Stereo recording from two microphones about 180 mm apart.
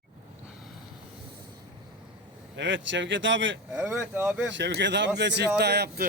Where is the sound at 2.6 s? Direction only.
90° right.